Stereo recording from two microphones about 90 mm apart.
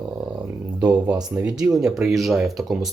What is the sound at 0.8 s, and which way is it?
Speech, 15° right (ahead or behind).